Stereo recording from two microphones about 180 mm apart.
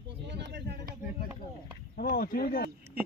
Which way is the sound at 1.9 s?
55° left (ahead or behind).